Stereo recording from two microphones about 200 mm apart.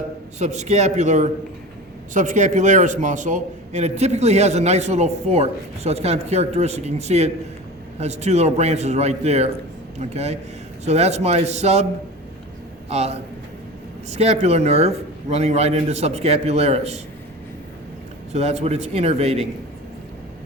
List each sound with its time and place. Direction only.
0.3 s a man's voice: 35° right (ahead or behind)
12.9 s a man's voice: 30° right (ahead or behind)
18.3 s a man's voice: 30° right (ahead or behind)